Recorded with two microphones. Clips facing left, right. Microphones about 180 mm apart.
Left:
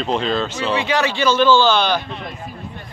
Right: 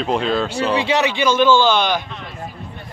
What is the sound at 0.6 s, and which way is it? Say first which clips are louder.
Speech: right 2 dB; 35° right (ahead or behind).